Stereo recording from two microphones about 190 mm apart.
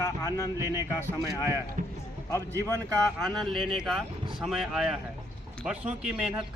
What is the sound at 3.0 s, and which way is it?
Speech, centre (ahead or behind).